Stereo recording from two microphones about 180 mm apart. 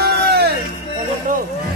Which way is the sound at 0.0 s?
60° right (ahead or behind).